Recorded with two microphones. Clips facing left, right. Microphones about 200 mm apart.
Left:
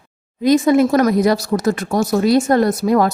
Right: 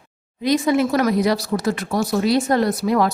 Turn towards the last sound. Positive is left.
turn(degrees=45)  # may be behind; listen again after turning